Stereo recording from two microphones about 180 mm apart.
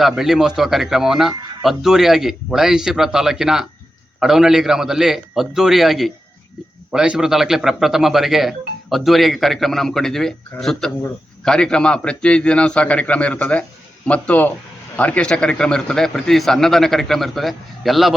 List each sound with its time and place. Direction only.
0.0 s a man's voice: centre (ahead or behind)